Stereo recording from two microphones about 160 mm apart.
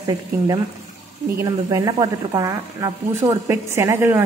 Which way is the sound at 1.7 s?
25° right (ahead or behind).